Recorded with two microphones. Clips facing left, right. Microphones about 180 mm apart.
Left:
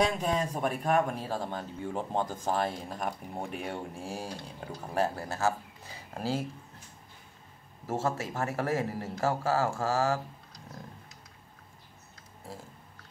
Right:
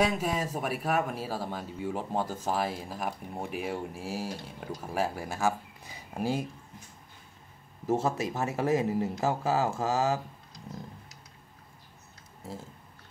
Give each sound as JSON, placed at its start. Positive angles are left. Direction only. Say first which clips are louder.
{"t": 0.0, "sound": "speech", "louder": "even", "side_deg": -5}
{"t": 7.8, "sound": "speech", "louder": "right 3 dB", "side_deg": -20}